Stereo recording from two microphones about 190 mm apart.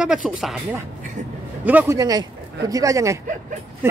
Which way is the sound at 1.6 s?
10° right (ahead or behind).